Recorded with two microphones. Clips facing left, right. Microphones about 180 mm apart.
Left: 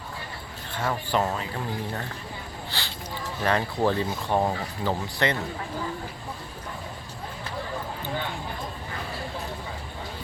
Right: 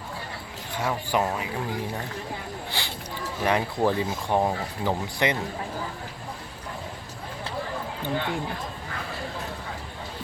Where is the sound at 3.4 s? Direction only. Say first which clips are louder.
Right 1 dB; 15° right (ahead or behind).